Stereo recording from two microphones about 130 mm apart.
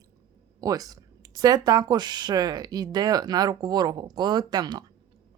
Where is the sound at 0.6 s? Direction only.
30° right (ahead or behind).